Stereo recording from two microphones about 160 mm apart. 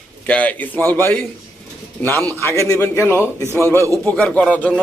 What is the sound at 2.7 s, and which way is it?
A man's voice, 20° left (ahead or behind).